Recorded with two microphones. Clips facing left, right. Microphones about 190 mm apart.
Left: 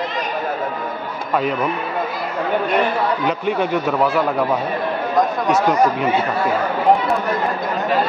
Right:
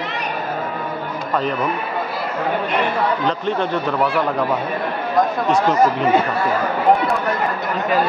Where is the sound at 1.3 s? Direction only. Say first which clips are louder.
Left 2 dB; 10° left (ahead or behind).